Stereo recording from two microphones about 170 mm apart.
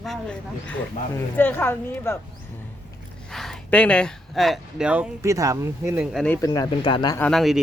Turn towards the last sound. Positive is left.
turn(degrees=0)  # may be behind; listen again after turning